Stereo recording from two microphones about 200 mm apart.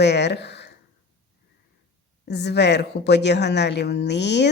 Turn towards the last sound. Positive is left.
turn(degrees=60)  # may be behind; listen again after turning